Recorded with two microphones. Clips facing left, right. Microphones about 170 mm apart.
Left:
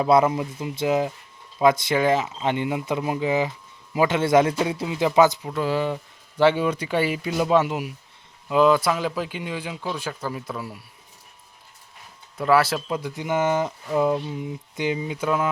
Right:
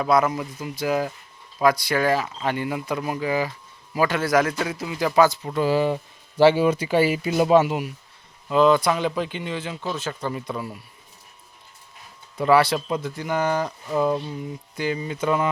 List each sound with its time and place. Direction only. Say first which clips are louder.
0.0 s speech: left 2 dB; 25° left (ahead or behind)
5.4 s speech: right 3 dB; centre (ahead or behind)
8.4 s speech: right 1 dB; 10° left (ahead or behind)
12.4 s speech: right 2 dB; centre (ahead or behind); by 13.7 s 20° left (ahead or behind)
13.8 s speech: even; 10° left (ahead or behind)